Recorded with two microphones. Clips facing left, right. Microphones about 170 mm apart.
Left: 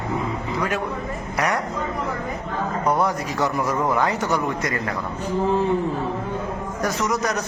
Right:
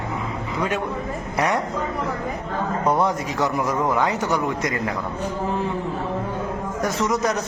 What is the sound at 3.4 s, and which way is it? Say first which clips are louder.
A man's voice: even; 15° right (ahead or behind).